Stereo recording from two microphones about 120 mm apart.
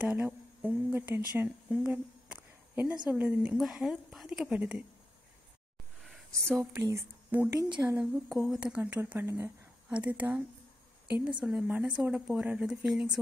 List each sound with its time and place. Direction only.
0.0 s a woman's voice: 15° right (ahead or behind)
6.4 s speech: 20° right (ahead or behind)
7.5 s speech: 30° right (ahead or behind)
8.0 s speech: 5° right (ahead or behind)